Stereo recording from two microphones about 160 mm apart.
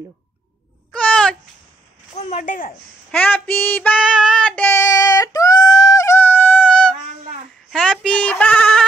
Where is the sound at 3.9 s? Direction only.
Centre (ahead or behind).